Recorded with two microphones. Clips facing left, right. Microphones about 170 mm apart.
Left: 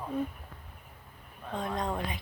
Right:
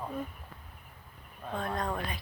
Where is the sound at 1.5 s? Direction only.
20° left (ahead or behind).